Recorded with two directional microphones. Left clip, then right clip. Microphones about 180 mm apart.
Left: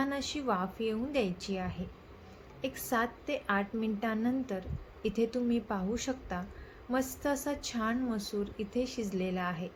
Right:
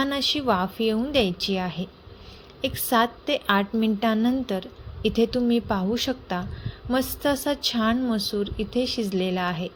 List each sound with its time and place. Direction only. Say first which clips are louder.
0.0 s a woman's voice: right 10 dB; 40° right (ahead or behind)